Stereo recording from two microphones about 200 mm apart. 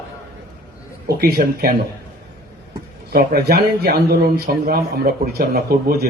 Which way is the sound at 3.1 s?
50° right (ahead or behind).